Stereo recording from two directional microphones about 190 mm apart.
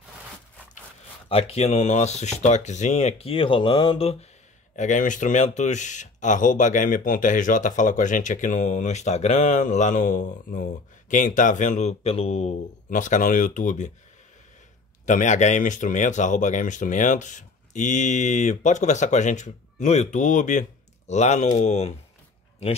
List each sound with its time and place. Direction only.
1.3 s speech: 35° left (ahead or behind)
15.0 s speech: 40° left (ahead or behind)